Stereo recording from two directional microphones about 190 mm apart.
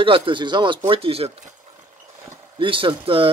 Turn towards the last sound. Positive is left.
turn(degrees=-30)  # may be behind; listen again after turning